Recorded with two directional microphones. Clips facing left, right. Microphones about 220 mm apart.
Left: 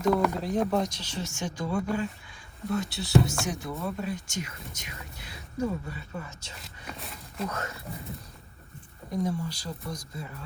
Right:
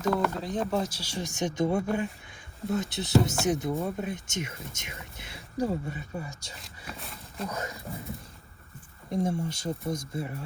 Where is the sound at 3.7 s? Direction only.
45° right (ahead or behind).